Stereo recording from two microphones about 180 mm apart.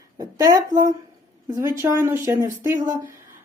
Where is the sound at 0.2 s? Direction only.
20° right (ahead or behind).